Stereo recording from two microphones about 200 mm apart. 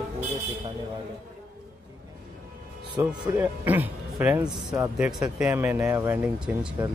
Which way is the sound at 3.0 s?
10° right (ahead or behind).